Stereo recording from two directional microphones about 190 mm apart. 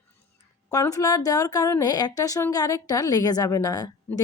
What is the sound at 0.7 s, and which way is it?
A woman's voice, 20° left (ahead or behind).